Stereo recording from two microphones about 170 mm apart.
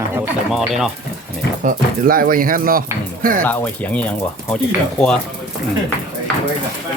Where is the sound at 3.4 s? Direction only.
10° left (ahead or behind).